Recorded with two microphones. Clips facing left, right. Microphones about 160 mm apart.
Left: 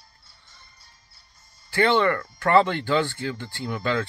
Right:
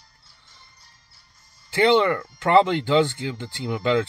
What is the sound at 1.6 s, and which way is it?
Speech, 20° right (ahead or behind).